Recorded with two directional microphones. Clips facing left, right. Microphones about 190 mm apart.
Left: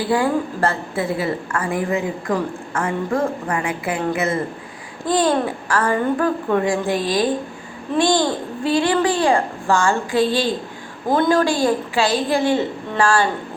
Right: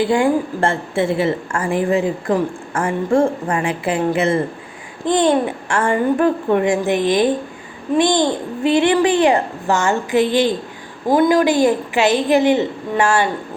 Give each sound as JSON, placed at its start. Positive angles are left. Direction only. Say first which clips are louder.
{"t": 0.0, "sound": "a woman's voice", "louder": "right 3 dB", "side_deg": -25}